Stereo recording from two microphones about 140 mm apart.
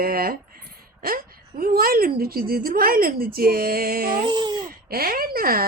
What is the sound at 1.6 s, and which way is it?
A woman's voice, 90° right.